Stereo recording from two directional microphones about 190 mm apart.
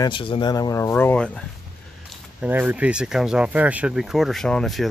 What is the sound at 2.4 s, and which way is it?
Speech, 10° right (ahead or behind).